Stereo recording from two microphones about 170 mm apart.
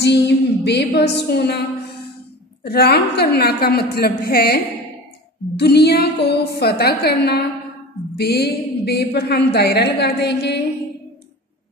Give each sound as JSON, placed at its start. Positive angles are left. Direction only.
{"t": 0.0, "sound": "a sound", "side_deg": 80}
{"t": 2.6, "sound": "a woman's voice", "side_deg": 70}
{"t": 5.6, "sound": "a woman's voice", "side_deg": 75}